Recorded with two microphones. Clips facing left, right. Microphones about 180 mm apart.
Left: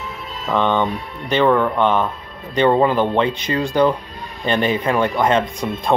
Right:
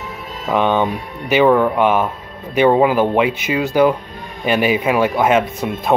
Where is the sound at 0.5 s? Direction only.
10° right (ahead or behind).